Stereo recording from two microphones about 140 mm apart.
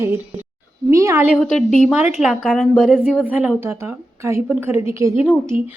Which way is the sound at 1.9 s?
5° right (ahead or behind).